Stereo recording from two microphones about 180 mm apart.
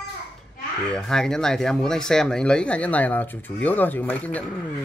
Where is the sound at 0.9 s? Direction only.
5° left (ahead or behind).